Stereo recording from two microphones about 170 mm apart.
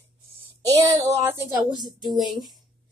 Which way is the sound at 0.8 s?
20° right (ahead or behind).